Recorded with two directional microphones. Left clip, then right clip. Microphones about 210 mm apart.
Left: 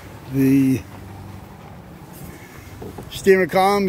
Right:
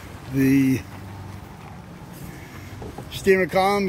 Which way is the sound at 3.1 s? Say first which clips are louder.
Left 3 dB; 30° left (ahead or behind).